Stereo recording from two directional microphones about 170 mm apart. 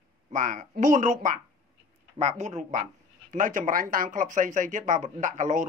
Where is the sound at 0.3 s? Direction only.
50° right (ahead or behind).